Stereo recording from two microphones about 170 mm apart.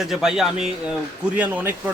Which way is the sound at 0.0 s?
Centre (ahead or behind).